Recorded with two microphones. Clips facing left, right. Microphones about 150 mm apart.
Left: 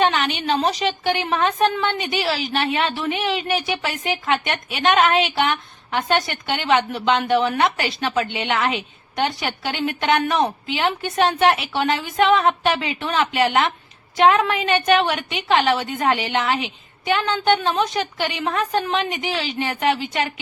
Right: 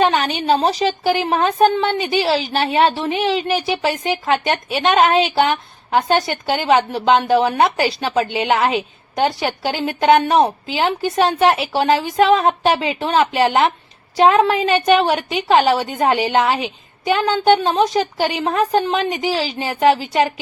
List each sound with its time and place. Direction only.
0.0 s a woman's voice: 35° right (ahead or behind)